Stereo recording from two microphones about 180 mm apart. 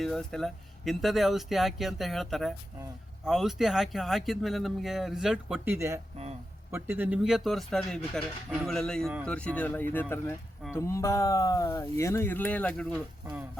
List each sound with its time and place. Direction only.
0.0 s speech: centre (ahead or behind)